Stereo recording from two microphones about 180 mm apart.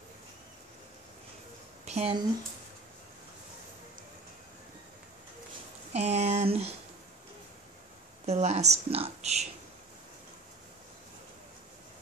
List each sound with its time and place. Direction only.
1.9 s speech: 35° right (ahead or behind)
5.9 s speech: 35° right (ahead or behind)
8.3 s speech: 40° right (ahead or behind)